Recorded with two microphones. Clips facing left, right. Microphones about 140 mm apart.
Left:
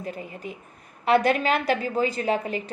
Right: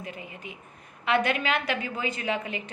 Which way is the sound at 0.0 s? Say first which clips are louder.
Left 5 dB; 40° left (ahead or behind).